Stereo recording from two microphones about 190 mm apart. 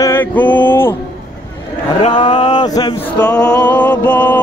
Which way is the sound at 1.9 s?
25° left (ahead or behind).